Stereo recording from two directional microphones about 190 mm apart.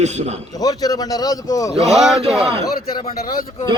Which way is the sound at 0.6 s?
20° left (ahead or behind).